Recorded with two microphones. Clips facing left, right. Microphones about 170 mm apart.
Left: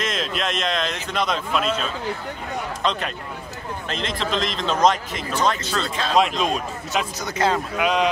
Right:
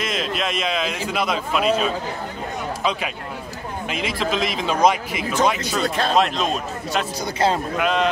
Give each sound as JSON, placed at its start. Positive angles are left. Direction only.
{"t": 0.0, "sound": "speech", "side_deg": -5}
{"t": 6.1, "sound": "a man's voice", "side_deg": 0}
{"t": 7.3, "sound": "speech", "side_deg": -30}
{"t": 7.7, "sound": "a man's voice", "side_deg": 0}